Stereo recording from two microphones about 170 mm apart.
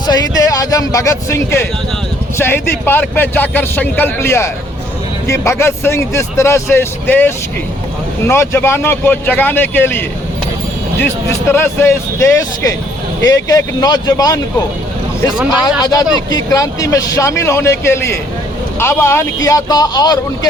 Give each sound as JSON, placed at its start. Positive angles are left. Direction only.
{"t": 0.1, "sound": "a man's voice", "side_deg": 20}
{"t": 15.8, "sound": "a man's voice", "side_deg": 20}